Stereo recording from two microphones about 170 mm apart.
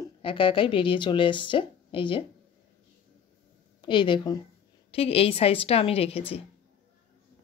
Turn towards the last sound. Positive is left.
turn(degrees=35)  # may be behind; listen again after turning